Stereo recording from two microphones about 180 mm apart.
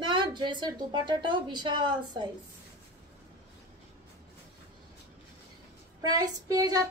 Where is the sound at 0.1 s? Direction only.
25° right (ahead or behind).